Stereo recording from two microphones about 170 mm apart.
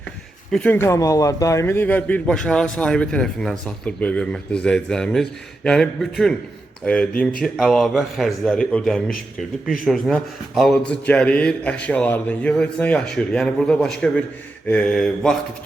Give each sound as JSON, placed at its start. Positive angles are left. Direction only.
{"t": 0.5, "sound": "a man's voice", "side_deg": 10}